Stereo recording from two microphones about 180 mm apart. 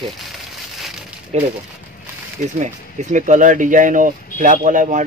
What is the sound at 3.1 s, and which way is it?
Speech, 45° right (ahead or behind).